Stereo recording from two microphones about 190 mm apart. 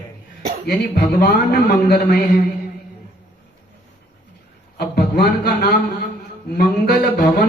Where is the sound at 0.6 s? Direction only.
55° left (ahead or behind).